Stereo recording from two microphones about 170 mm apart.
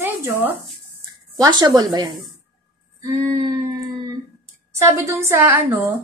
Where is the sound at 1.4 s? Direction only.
25° right (ahead or behind).